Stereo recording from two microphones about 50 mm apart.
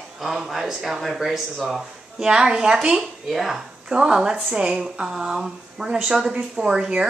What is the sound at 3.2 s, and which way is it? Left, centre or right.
Speech, centre.